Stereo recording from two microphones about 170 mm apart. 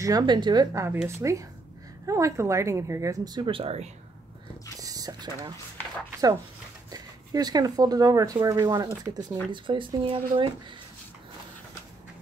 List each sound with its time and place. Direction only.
0.0 s a woman's voice: 25° right (ahead or behind)
4.7 s a sound: 20° right (ahead or behind)
6.9 s speech: 25° right (ahead or behind)